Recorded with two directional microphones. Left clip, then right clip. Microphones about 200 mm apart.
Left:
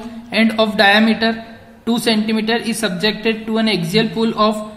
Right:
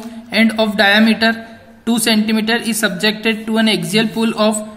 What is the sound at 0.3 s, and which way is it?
A woman's voice, 35° right (ahead or behind).